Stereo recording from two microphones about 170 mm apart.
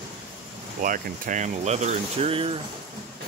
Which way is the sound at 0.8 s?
50° right (ahead or behind).